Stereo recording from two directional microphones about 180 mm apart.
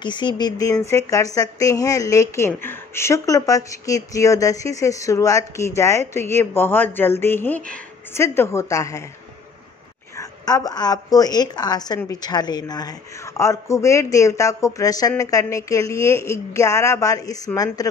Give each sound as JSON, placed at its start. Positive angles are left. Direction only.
{"t": 0.0, "sound": "a woman's voice", "side_deg": 25}
{"t": 10.1, "sound": "a woman's voice", "side_deg": 20}